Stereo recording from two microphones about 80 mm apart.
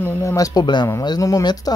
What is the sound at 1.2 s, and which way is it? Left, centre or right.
Speech, left.